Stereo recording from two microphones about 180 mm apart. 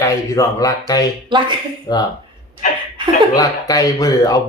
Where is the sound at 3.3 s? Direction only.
20° left (ahead or behind).